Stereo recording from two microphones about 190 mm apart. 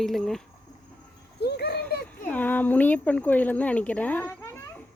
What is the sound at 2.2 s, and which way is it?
Speech, 10° left (ahead or behind).